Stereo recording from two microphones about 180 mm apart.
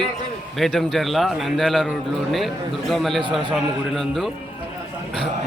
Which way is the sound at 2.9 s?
Centre (ahead or behind).